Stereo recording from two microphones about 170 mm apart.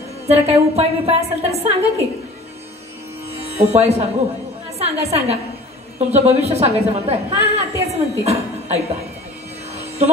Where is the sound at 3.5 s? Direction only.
40° right (ahead or behind).